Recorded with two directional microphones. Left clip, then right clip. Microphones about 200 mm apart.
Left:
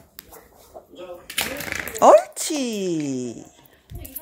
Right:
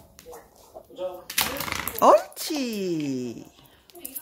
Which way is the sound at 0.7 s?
45° left (ahead or behind).